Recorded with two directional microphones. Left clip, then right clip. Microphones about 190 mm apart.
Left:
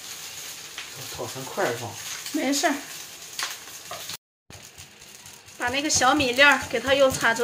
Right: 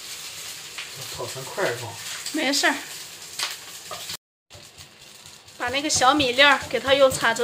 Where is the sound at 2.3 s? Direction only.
10° left (ahead or behind).